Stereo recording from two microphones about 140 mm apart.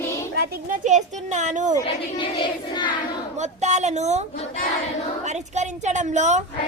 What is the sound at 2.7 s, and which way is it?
Child singing, 35° left (ahead or behind).